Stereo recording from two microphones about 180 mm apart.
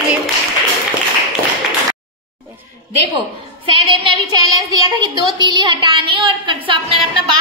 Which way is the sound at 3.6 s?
30° right (ahead or behind).